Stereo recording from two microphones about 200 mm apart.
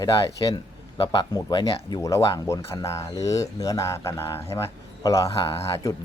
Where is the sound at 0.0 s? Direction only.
20° left (ahead or behind).